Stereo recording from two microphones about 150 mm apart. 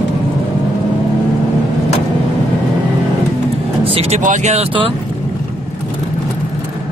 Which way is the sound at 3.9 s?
45° right (ahead or behind).